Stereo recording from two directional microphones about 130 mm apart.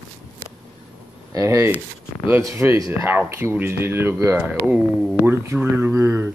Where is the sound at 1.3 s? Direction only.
25° right (ahead or behind).